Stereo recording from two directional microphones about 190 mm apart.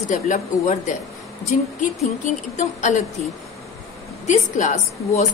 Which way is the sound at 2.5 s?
35° left (ahead or behind).